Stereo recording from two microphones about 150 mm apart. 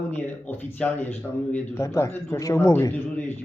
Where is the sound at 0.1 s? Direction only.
10° left (ahead or behind).